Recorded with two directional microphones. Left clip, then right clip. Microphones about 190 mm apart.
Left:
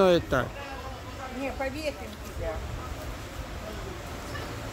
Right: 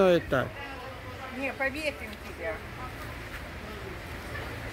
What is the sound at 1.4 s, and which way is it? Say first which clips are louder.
Speech: right 2 dB; 5° left (ahead or behind).